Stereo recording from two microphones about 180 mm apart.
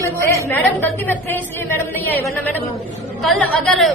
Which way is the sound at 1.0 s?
10° left (ahead or behind).